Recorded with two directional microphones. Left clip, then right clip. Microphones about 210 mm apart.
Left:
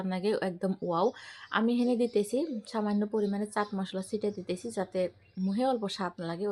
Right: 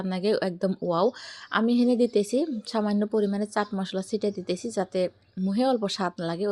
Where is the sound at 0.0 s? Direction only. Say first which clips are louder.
Right 5 dB; 30° right (ahead or behind).